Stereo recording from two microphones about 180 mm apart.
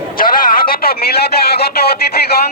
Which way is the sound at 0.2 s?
50° left (ahead or behind).